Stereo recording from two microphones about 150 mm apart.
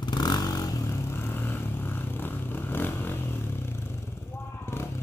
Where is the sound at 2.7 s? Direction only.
15° left (ahead or behind).